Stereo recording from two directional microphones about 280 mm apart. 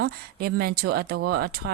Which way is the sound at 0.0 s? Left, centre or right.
Right.